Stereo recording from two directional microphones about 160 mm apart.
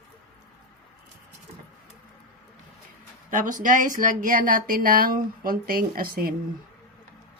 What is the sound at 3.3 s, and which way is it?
Speech, 55° right (ahead or behind).